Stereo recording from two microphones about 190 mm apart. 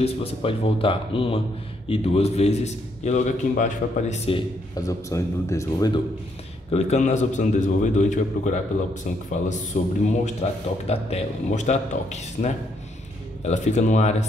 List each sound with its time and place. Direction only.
0.0 s a man's voice: 30° left (ahead or behind)
4.3 s a man's voice: 20° left (ahead or behind)
6.7 s speech: 35° left (ahead or behind)
9.8 s a man's voice: 45° left (ahead or behind)
10.2 s speech: 35° left (ahead or behind)